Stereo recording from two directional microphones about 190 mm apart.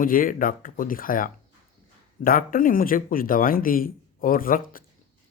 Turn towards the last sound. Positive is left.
turn(degrees=45)  # may be behind; listen again after turning